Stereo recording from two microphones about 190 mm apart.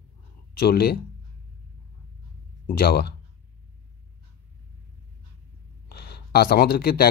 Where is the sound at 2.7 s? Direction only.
55° left (ahead or behind).